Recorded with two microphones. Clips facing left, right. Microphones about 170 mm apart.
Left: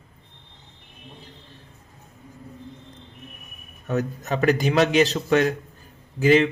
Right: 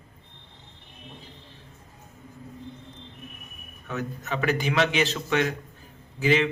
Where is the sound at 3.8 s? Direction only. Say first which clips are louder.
Left 6 dB; 40° left (ahead or behind).